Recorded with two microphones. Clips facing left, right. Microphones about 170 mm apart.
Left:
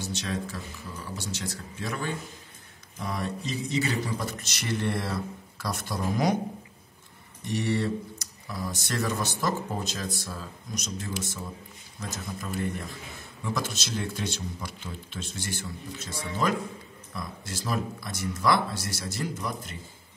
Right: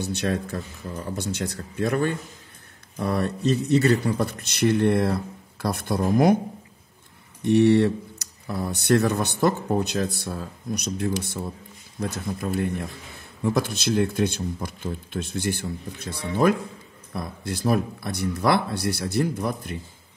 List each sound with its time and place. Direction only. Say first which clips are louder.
0.0 s speech: right 6 dB; 60° right (ahead or behind)
7.4 s speech: right 11 dB; 65° right (ahead or behind)